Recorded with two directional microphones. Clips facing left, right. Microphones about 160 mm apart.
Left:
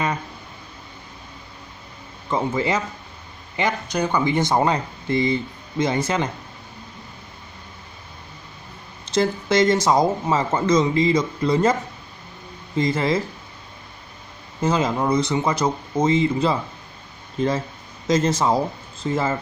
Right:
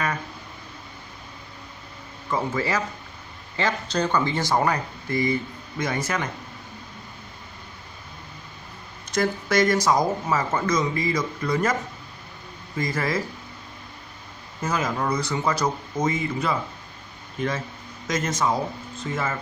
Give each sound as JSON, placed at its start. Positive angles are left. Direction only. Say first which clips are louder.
{"t": 2.2, "sound": "speech", "louder": "left 3 dB", "side_deg": 20}
{"t": 9.0, "sound": "speech", "louder": "left 3 dB", "side_deg": 25}
{"t": 12.7, "sound": "speech", "louder": "left 5 dB", "side_deg": 25}
{"t": 14.6, "sound": "speech", "louder": "left 5 dB", "side_deg": 25}
{"t": 18.0, "sound": "speech", "louder": "left 5 dB", "side_deg": 30}